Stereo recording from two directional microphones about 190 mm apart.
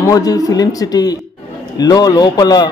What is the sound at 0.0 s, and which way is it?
A man's voice, 20° left (ahead or behind).